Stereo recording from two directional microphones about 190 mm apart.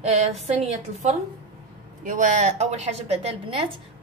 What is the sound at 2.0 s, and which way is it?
A woman's voice, 40° right (ahead or behind).